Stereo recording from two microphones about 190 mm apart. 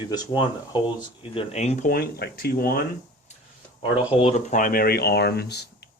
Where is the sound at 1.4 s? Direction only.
35° left (ahead or behind).